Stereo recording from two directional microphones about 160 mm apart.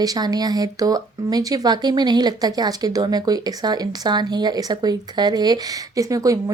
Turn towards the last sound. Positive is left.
turn(degrees=-20)  # may be behind; listen again after turning